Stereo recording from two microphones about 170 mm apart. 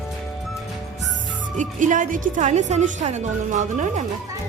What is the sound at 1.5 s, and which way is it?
A woman's voice, 45° right (ahead or behind).